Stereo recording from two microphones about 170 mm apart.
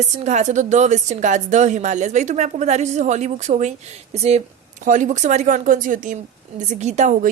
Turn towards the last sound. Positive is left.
turn(degrees=-45)  # may be behind; listen again after turning